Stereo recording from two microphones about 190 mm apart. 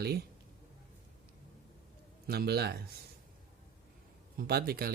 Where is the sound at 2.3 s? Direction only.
55° right (ahead or behind).